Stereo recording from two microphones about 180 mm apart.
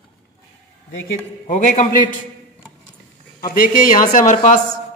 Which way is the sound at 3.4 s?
55° left (ahead or behind).